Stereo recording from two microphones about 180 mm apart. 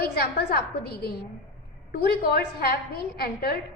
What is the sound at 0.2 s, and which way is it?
A woman's voice, 60° left (ahead or behind).